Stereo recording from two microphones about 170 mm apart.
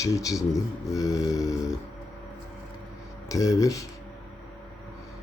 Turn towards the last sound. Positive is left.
turn(degrees=20)  # may be behind; listen again after turning